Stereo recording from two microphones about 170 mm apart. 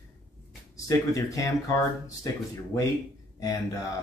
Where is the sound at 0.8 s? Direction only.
20° left (ahead or behind).